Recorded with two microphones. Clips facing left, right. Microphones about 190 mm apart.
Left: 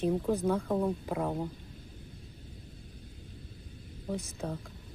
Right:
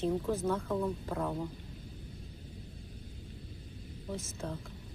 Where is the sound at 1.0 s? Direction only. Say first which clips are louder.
Left 3 dB; 15° left (ahead or behind).